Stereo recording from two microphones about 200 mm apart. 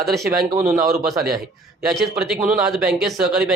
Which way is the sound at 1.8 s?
5° right (ahead or behind).